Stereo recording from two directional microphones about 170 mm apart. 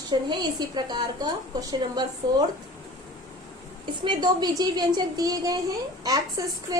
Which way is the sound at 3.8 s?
25° right (ahead or behind).